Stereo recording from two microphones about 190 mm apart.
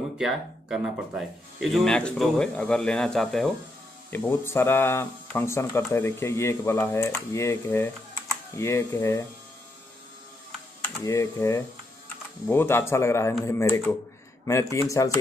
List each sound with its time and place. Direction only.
0.2 s speech: 5° right (ahead or behind)
4.1 s speech: 10° left (ahead or behind)
10.8 s speech: 15° left (ahead or behind)